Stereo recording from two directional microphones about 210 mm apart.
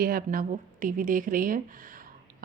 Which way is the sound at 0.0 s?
45° right (ahead or behind).